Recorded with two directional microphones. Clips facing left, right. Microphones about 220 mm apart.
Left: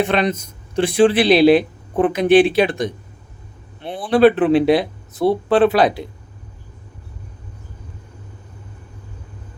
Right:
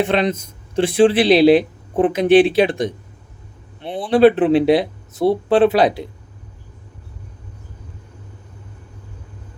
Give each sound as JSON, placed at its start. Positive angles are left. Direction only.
{"t": 0.0, "sound": "speech", "side_deg": -25}